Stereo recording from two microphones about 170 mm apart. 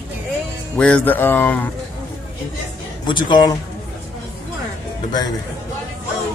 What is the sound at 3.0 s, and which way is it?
Speech, 25° left (ahead or behind).